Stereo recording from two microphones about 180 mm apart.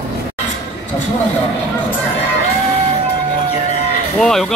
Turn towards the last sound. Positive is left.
turn(degrees=0)  # may be behind; listen again after turning